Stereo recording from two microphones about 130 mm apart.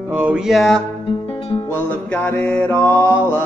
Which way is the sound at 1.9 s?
15° left (ahead or behind).